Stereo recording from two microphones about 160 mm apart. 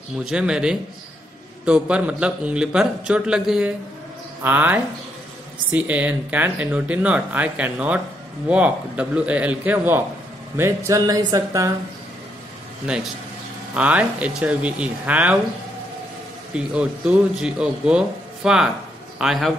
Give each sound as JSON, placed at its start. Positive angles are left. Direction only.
{"t": 0.2, "sound": "speech", "side_deg": -5}
{"t": 12.8, "sound": "speech", "side_deg": -5}
{"t": 16.5, "sound": "a man's voice", "side_deg": -5}